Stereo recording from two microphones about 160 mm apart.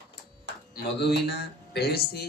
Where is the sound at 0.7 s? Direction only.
90° left.